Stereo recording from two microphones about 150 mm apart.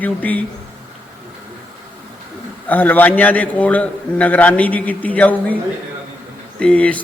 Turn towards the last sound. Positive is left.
turn(degrees=10)  # may be behind; listen again after turning